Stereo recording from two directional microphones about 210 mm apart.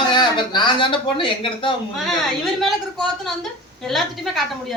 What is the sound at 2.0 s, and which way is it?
Speech, centre (ahead or behind).